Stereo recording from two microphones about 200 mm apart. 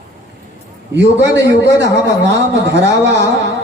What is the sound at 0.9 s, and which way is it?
Speech, 60° right (ahead or behind).